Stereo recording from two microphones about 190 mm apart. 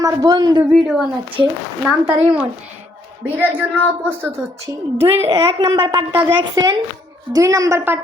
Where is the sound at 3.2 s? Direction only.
10° right (ahead or behind).